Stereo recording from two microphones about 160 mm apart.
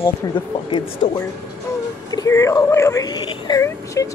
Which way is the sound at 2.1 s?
20° left (ahead or behind).